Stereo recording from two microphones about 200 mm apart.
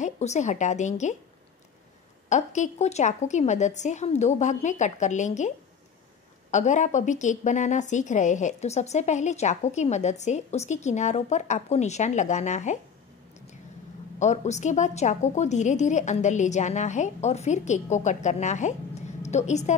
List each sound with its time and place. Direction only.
0.0 s a woman's voice: 35° left (ahead or behind)
2.2 s a woman's voice: 35° left (ahead or behind)
6.5 s a woman's voice: 35° left (ahead or behind)
14.2 s a woman's voice: 35° left (ahead or behind)